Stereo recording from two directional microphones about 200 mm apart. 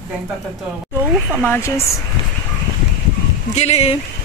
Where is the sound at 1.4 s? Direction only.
10° left (ahead or behind).